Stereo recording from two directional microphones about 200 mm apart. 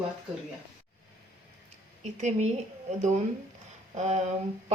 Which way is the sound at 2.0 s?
35° right (ahead or behind).